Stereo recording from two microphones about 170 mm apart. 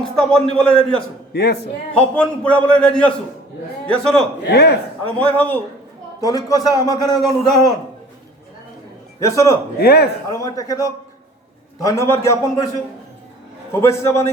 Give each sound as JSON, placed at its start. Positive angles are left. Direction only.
{"t": 0.0, "sound": "a man's voice", "side_deg": 5}
{"t": 1.3, "sound": "speech", "side_deg": 75}
{"t": 1.9, "sound": "a man's voice", "side_deg": 5}
{"t": 4.4, "sound": "speech", "side_deg": 75}
{"t": 5.0, "sound": "a man's voice", "side_deg": 10}
{"t": 6.1, "sound": "a man's voice", "side_deg": 20}
{"t": 9.2, "sound": "a man's voice", "side_deg": 20}
{"t": 9.7, "sound": "speech", "side_deg": 70}
{"t": 10.2, "sound": "a man's voice", "side_deg": 20}
{"t": 13.7, "sound": "a man's voice", "side_deg": 15}